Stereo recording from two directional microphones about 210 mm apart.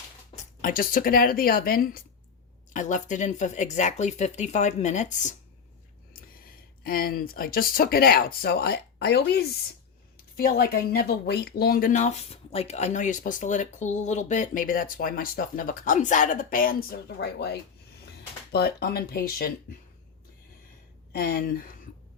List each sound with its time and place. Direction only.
0.6 s speech: 40° left (ahead or behind)
6.8 s speech: 45° left (ahead or behind)
21.1 s speech: 45° left (ahead or behind)